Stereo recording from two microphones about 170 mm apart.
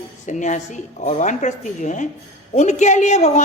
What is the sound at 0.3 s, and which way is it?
A woman's voice, 45° left (ahead or behind).